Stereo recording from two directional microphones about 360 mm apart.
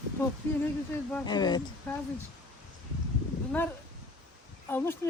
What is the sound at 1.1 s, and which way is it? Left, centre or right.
Speech, centre.